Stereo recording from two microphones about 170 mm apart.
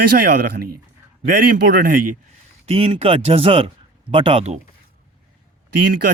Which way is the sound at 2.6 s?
35° right (ahead or behind).